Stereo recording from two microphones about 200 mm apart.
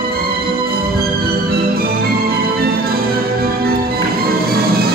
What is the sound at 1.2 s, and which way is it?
Music, 50° right (ahead or behind).